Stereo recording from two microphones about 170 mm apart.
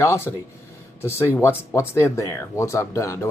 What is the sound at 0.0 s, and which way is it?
Speech, 15° left (ahead or behind).